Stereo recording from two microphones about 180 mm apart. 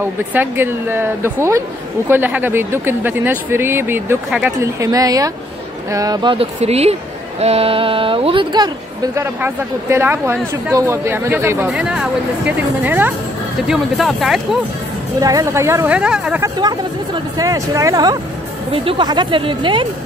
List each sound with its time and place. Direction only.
0.0 s speech: 10° right (ahead or behind)
4.7 s speech: 20° right (ahead or behind); by 14.6 s centre (ahead or behind)
15.1 s speech: 20° right (ahead or behind)
16.4 s speech: 25° right (ahead or behind)